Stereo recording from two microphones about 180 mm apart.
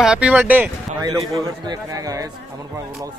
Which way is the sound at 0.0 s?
5° right (ahead or behind).